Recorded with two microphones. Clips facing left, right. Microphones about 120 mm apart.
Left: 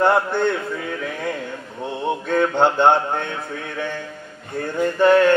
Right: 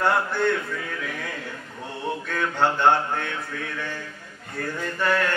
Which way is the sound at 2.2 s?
25° left (ahead or behind).